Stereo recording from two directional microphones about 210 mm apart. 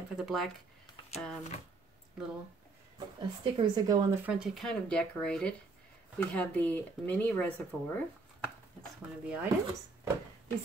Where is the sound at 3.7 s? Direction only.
15° right (ahead or behind).